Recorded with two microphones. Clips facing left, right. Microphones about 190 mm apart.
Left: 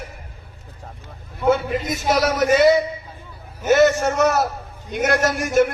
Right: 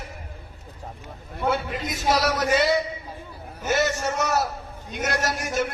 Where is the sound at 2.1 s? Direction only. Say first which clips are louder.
Left 4 dB; 55° left (ahead or behind).